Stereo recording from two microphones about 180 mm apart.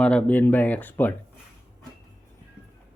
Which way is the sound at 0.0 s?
5° left (ahead or behind).